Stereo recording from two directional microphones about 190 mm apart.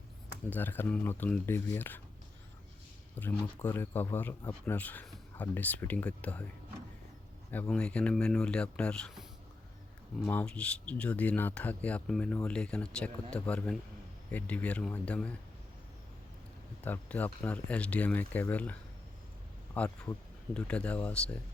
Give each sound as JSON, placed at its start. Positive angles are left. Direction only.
{"t": 0.5, "sound": "speech", "side_deg": 10}
{"t": 3.2, "sound": "speech", "side_deg": 10}
{"t": 7.5, "sound": "speech", "side_deg": 5}
{"t": 16.8, "sound": "speech", "side_deg": 10}